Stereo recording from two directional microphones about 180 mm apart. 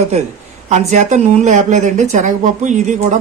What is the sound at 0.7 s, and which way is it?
Speech, 40° right (ahead or behind).